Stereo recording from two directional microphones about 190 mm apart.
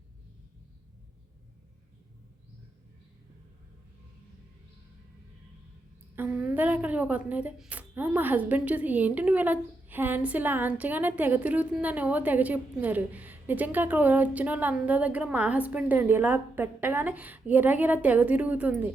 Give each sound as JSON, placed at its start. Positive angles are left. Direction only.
{"t": 6.1, "sound": "a woman's voice", "side_deg": -10}